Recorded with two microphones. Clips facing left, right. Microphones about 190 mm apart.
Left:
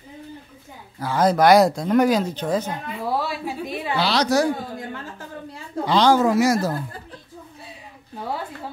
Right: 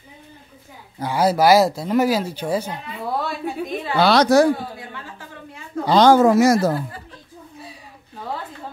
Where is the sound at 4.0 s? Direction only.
55° right (ahead or behind).